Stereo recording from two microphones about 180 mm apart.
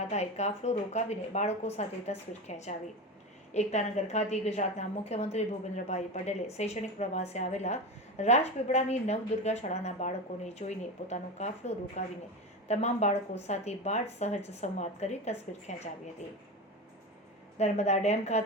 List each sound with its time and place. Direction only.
0.1 s a woman's voice: 40° left (ahead or behind)
17.6 s a woman's voice: 40° left (ahead or behind)